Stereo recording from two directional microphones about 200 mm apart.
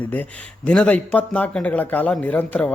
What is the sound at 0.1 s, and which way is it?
Speech, 10° left (ahead or behind).